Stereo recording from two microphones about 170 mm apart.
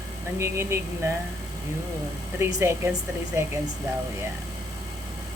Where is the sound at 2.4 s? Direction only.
15° right (ahead or behind).